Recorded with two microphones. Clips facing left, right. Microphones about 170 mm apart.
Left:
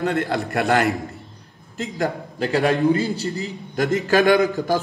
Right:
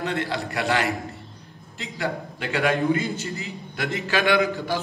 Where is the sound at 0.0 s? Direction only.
50° left (ahead or behind).